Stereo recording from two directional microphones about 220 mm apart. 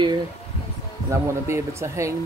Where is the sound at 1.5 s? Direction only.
10° right (ahead or behind).